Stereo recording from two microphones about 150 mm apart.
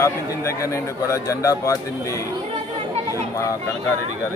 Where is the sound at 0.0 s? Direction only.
20° left (ahead or behind).